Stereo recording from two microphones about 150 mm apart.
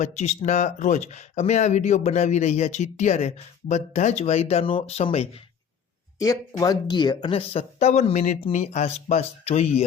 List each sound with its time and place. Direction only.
0.0 s speech: 50° left (ahead or behind)
6.1 s speech: 20° left (ahead or behind); by 9.8 s 45° left (ahead or behind)